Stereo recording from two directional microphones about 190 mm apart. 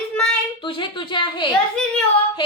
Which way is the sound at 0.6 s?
25° left (ahead or behind).